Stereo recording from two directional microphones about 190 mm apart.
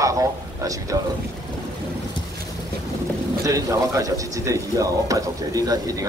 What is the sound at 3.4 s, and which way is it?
A man's voice, 15° right (ahead or behind).